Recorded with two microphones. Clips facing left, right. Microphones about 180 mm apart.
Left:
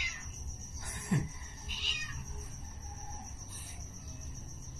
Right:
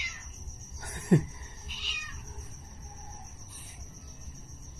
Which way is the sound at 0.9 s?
65° right (ahead or behind).